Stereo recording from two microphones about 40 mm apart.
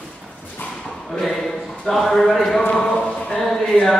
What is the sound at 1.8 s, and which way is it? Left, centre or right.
Speech, centre.